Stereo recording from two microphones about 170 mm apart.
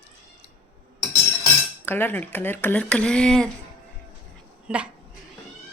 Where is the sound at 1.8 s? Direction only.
10° left (ahead or behind).